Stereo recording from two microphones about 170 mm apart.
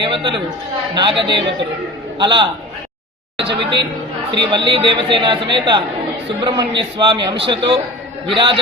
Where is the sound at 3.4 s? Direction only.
90° right.